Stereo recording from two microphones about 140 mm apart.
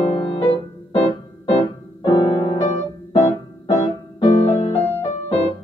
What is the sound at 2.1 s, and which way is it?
Music, 35° left (ahead or behind).